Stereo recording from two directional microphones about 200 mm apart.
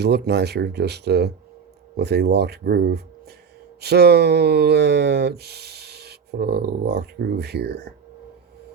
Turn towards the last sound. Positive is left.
turn(degrees=-55)  # may be behind; listen again after turning